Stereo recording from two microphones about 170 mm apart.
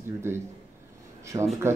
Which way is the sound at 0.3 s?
15° right (ahead or behind).